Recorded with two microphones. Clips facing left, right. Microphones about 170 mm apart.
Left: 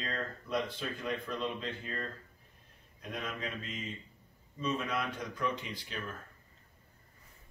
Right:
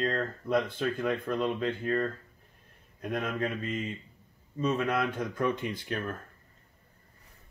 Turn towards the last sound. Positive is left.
turn(degrees=-50)  # may be behind; listen again after turning